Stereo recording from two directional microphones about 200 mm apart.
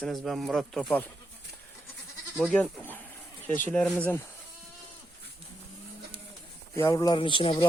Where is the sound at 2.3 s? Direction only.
5° left (ahead or behind).